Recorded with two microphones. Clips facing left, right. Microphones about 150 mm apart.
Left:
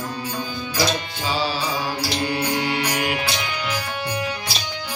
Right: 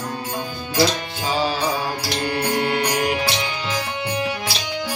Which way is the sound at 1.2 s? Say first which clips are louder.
Right 4 dB; 45° right (ahead or behind).